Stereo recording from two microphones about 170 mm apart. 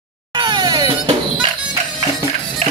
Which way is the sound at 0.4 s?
25° right (ahead or behind).